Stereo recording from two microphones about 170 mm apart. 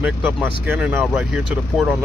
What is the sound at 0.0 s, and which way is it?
Speech, 10° right (ahead or behind).